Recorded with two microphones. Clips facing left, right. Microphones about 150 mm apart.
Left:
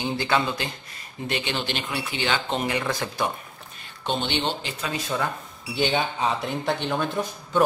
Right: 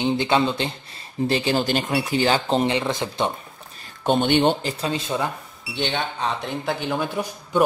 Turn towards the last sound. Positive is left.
turn(degrees=-10)  # may be behind; listen again after turning